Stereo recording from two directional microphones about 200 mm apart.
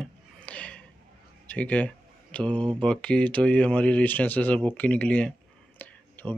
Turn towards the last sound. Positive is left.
turn(degrees=10)  # may be behind; listen again after turning